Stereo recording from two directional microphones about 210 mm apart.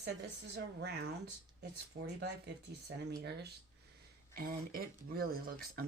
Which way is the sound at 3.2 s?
50° right (ahead or behind).